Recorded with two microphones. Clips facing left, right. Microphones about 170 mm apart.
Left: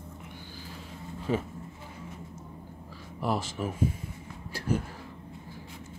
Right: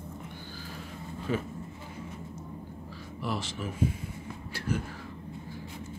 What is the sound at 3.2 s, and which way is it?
Speech, 45° left (ahead or behind).